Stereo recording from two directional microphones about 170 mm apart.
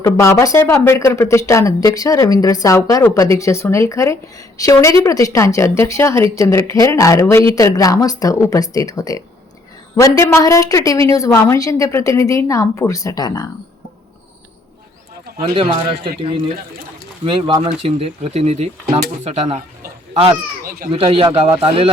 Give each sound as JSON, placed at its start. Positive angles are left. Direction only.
{"t": 0.0, "sound": "a woman's voice", "side_deg": 15}
{"t": 15.5, "sound": "speech", "side_deg": -35}
{"t": 17.2, "sound": "speech", "side_deg": -30}
{"t": 20.7, "sound": "speech", "side_deg": -60}
{"t": 20.9, "sound": "speech", "side_deg": -30}